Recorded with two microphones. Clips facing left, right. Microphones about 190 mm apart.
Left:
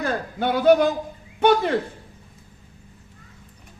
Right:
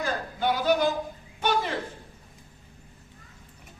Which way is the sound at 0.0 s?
60° left (ahead or behind).